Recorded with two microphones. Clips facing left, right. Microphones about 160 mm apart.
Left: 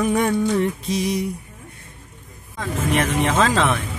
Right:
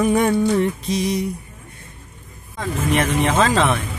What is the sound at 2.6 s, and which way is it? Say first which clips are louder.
Mantra: right 1 dB; centre (ahead or behind).